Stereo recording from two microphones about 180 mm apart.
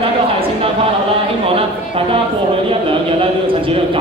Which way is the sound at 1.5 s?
30° right (ahead or behind).